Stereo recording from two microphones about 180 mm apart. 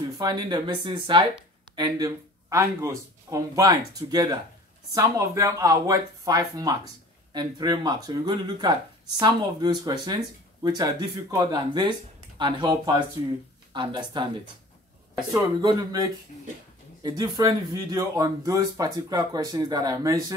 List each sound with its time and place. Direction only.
0.2 s speech: 25° right (ahead or behind)
15.3 s speech: 20° right (ahead or behind)